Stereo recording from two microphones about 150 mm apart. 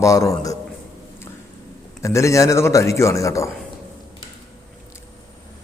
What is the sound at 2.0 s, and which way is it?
A man's voice, 20° left (ahead or behind).